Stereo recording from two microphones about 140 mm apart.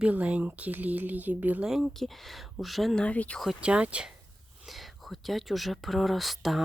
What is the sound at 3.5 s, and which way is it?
Speech, 5° right (ahead or behind).